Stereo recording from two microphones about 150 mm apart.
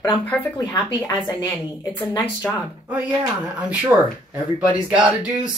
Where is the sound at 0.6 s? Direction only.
20° left (ahead or behind).